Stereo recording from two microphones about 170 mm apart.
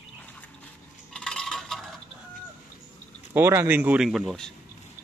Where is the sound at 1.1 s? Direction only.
5° left (ahead or behind).